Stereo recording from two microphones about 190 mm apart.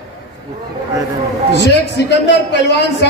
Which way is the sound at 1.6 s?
65° left (ahead or behind).